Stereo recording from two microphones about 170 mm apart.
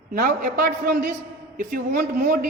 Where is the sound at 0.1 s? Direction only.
55° right (ahead or behind).